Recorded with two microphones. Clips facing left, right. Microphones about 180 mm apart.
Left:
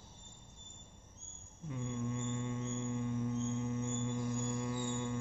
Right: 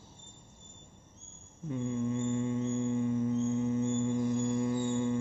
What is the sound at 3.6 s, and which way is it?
Music, centre (ahead or behind).